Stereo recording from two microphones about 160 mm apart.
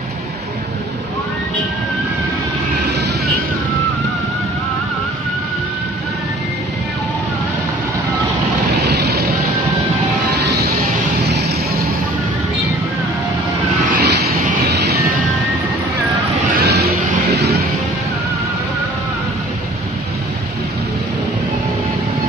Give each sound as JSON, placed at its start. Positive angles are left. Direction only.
{"t": 8.9, "sound": "vehicle", "side_deg": -80}
{"t": 11.3, "sound": "vehicle", "side_deg": -80}
{"t": 14.0, "sound": "vehicle", "side_deg": -90}
{"t": 16.6, "sound": "music", "side_deg": -85}